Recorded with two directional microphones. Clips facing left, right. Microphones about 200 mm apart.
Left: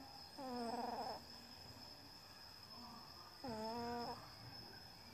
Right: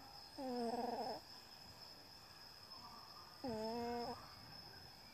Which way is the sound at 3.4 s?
20° right (ahead or behind).